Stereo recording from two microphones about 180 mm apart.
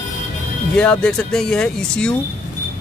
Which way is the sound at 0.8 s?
5° left (ahead or behind).